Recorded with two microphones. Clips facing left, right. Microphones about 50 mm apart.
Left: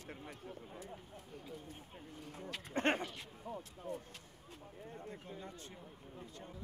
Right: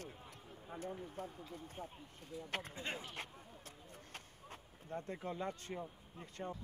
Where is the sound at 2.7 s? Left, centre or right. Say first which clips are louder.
Left 10 dB; left.